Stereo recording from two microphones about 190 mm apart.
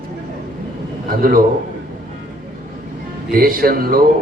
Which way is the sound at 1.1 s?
50° right (ahead or behind).